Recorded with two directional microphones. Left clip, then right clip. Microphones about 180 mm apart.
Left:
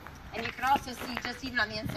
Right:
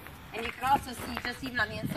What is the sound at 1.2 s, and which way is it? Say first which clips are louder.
Speech: even; 20° left (ahead or behind).